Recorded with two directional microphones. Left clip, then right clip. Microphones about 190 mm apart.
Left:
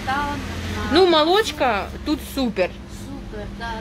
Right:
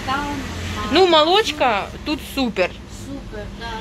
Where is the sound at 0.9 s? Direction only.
10° left (ahead or behind).